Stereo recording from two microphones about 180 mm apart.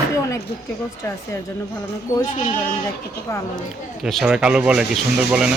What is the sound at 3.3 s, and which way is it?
Speech, 15° left (ahead or behind).